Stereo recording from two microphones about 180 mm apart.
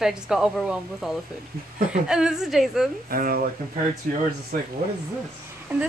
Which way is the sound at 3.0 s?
50° right (ahead or behind).